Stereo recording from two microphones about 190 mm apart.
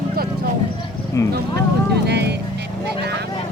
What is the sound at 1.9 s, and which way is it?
Speech, 60° right (ahead or behind).